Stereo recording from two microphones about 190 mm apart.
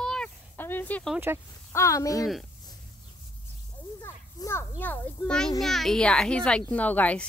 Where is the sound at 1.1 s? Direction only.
10° right (ahead or behind).